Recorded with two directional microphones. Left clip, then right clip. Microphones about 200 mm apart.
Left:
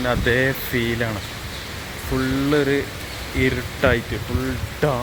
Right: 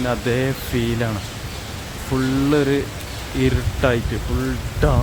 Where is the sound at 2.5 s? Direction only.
15° right (ahead or behind).